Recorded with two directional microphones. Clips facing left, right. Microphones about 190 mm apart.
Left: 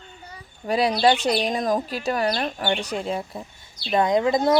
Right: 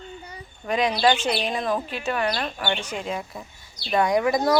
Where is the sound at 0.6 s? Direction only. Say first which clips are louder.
Left 2 dB; 35° left (ahead or behind).